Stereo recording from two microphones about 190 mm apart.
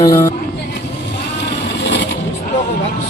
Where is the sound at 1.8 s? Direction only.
70° left (ahead or behind).